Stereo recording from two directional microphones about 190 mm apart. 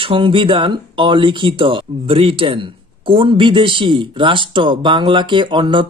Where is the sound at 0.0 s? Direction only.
25° right (ahead or behind).